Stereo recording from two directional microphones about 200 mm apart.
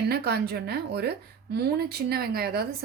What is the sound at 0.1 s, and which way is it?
Speech, 50° right (ahead or behind).